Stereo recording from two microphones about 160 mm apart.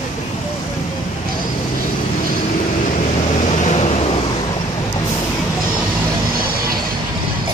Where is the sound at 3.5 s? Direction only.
50° left (ahead or behind).